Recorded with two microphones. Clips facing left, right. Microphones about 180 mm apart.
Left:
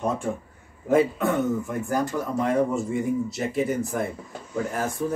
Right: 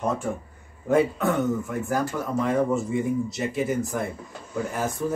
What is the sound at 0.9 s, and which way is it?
Speech, centre (ahead or behind).